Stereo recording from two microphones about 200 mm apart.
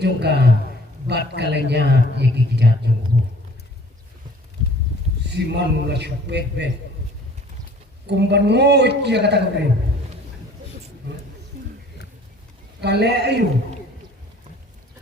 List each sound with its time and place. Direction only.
0.0 s a man's voice: 55° right (ahead or behind)
5.3 s a man's voice: 55° right (ahead or behind)
8.0 s a man's voice: 60° right (ahead or behind)
12.8 s a man's voice: 55° right (ahead or behind)